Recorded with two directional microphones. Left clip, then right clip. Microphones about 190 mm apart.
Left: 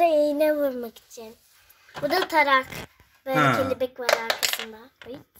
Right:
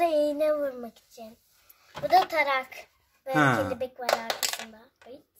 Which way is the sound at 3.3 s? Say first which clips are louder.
Left 2 dB; 10° right (ahead or behind).